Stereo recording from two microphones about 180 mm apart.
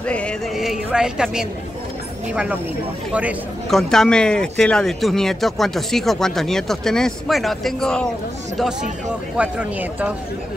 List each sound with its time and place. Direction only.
0.0 s music: 5° left (ahead or behind)
3.1 s a man's voice: 5° right (ahead or behind)
9.4 s a man's voice: 10° right (ahead or behind)